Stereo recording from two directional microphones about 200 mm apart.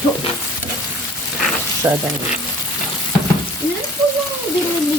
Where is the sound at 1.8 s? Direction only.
15° right (ahead or behind).